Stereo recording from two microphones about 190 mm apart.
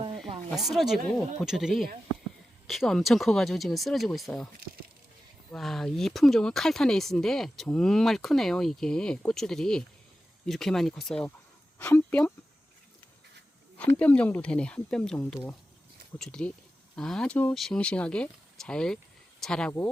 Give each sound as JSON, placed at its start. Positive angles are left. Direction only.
{"t": 0.5, "sound": "speech", "side_deg": 0}
{"t": 5.5, "sound": "speech", "side_deg": 0}
{"t": 13.9, "sound": "speech", "side_deg": 5}